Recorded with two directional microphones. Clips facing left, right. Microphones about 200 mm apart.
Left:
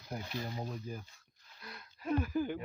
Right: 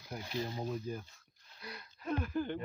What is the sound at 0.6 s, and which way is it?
Speech, 5° left (ahead or behind).